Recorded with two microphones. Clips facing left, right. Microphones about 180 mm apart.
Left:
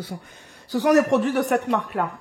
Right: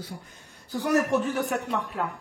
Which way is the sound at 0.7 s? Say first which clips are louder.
Left 6 dB; 90° left.